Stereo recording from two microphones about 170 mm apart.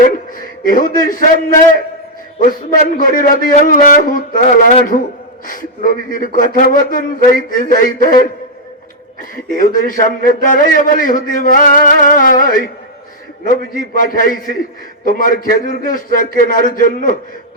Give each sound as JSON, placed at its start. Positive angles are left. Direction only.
{"t": 0.0, "sound": "a man's voice", "side_deg": 55}
{"t": 9.3, "sound": "a man's voice", "side_deg": 55}